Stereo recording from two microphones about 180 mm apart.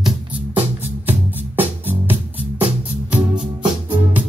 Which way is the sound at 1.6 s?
10° right (ahead or behind).